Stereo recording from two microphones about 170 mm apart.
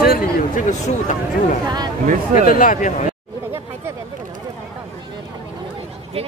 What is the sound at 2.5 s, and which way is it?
Speech, 50° left (ahead or behind).